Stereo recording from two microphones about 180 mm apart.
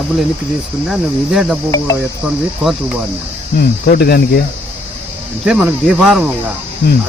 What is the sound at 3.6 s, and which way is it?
Cricket, 60° left (ahead or behind).